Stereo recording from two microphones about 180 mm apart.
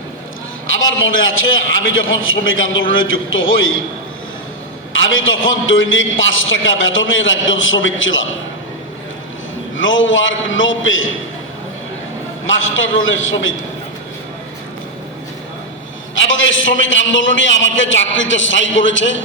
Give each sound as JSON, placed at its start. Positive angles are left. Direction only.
{"t": 0.8, "sound": "a man's voice", "side_deg": 90}
{"t": 5.0, "sound": "a man's voice", "side_deg": 90}
{"t": 9.7, "sound": "a man's voice", "side_deg": 90}
{"t": 12.5, "sound": "a man's voice", "side_deg": 90}
{"t": 16.1, "sound": "a man's voice", "side_deg": 90}